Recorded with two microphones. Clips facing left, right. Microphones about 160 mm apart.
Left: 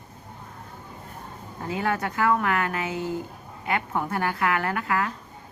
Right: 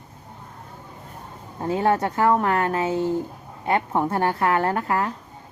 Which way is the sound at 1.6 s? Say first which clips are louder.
Right 6 dB; 30° right (ahead or behind).